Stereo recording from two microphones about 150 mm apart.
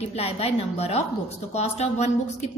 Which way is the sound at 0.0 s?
45° left (ahead or behind).